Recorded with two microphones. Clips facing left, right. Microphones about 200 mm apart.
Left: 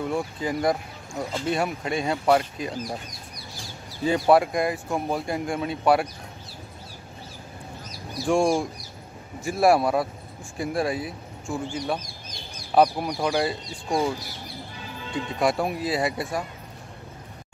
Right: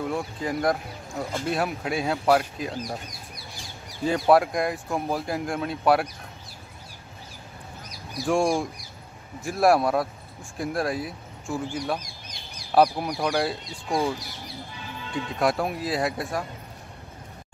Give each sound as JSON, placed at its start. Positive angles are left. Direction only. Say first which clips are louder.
{"t": 0.0, "sound": "speech", "louder": "left 1 dB", "side_deg": 0}
{"t": 8.3, "sound": "speech", "louder": "left 2 dB", "side_deg": 0}